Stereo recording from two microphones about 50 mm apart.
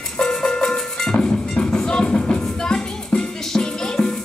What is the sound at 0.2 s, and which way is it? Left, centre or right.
Music, centre.